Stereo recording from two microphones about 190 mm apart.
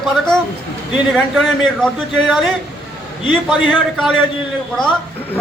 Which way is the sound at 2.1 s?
Centre (ahead or behind).